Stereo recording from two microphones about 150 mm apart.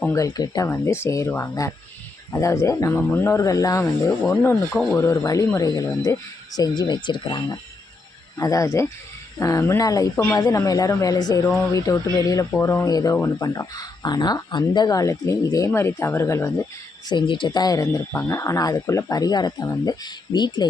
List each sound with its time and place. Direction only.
0.1 s speech: 25° left (ahead or behind)
17.1 s speech: 30° left (ahead or behind)